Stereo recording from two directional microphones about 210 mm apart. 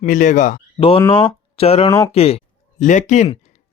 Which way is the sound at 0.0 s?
40° left (ahead or behind).